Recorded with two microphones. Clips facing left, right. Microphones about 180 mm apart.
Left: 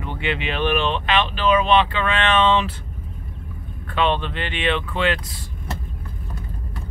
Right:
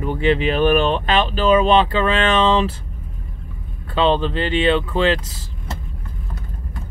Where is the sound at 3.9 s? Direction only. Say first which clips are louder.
Right 4 dB; 30° right (ahead or behind).